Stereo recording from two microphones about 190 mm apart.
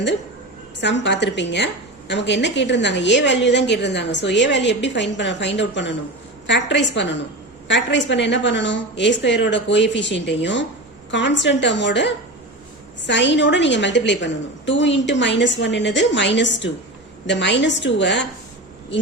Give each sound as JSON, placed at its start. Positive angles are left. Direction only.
{"t": 0.8, "sound": "a woman's voice", "side_deg": 70}